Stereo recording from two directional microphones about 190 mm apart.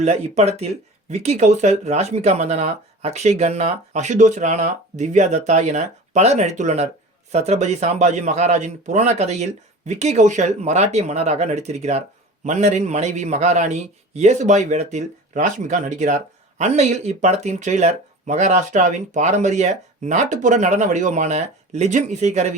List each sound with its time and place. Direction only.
0.0 s a man's voice: 35° right (ahead or behind)